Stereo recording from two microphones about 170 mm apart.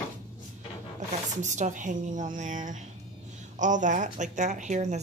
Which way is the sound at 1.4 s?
45° right (ahead or behind).